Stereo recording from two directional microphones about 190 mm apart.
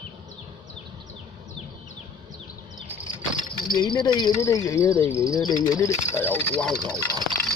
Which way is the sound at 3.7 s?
25° left (ahead or behind).